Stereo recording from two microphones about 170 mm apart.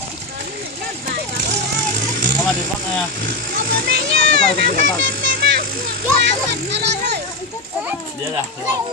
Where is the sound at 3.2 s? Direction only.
55° right (ahead or behind); by 7.1 s 85° right.